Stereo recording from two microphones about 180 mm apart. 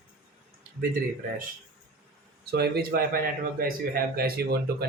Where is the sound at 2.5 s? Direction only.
60° right (ahead or behind).